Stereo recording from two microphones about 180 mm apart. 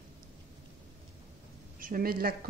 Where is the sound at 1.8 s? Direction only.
50° right (ahead or behind).